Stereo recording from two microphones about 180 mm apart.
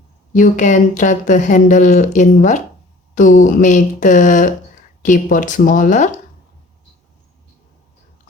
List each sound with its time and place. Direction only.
0.3 s speech: 45° left (ahead or behind)